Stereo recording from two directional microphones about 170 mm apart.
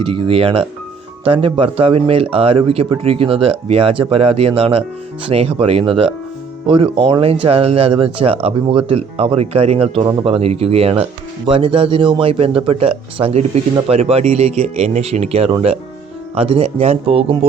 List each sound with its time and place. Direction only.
0.0 s a man's voice: 30° right (ahead or behind)